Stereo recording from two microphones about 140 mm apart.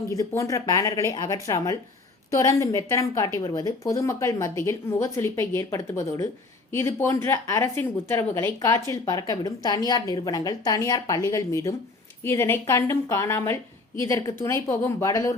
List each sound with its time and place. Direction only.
0.2 s speech: 25° left (ahead or behind)